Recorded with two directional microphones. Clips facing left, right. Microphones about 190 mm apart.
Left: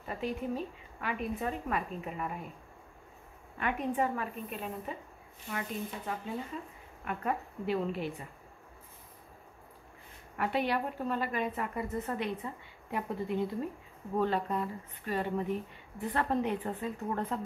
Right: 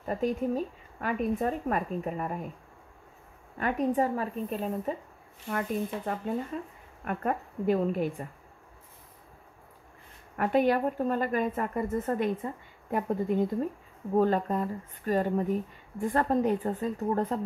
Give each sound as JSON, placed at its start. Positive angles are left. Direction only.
{"t": 0.0, "sound": "speech", "side_deg": -45}
{"t": 3.5, "sound": "a woman's voice", "side_deg": -40}
{"t": 5.5, "sound": "speech", "side_deg": -50}
{"t": 10.3, "sound": "speech", "side_deg": -45}